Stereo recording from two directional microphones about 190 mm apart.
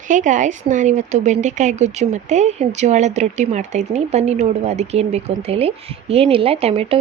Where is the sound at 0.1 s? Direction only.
40° right (ahead or behind).